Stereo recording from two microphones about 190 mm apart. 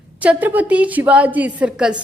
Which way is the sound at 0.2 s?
10° right (ahead or behind).